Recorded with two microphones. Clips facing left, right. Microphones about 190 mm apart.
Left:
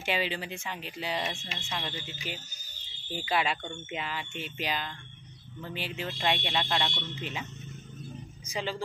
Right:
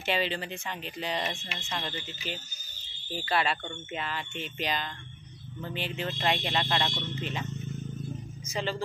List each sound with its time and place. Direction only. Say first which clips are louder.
0.0 s speech: right 1 dB; 10° left (ahead or behind)
8.5 s speech: right 2 dB; 10° left (ahead or behind)